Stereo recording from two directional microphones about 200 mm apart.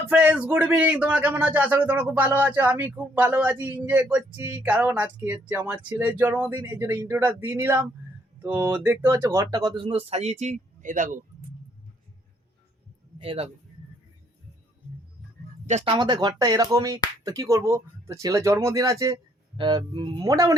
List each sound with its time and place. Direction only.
0.1 s speech: 5° right (ahead or behind); by 11.2 s 40° right (ahead or behind)
13.1 s speech: 30° right (ahead or behind)
15.6 s speech: 30° right (ahead or behind)